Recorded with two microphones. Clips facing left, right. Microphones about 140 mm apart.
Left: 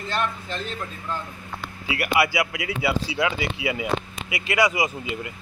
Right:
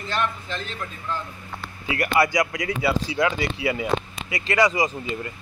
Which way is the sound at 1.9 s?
10° left (ahead or behind).